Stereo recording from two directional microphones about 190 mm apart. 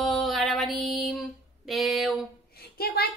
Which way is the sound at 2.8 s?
55° left (ahead or behind).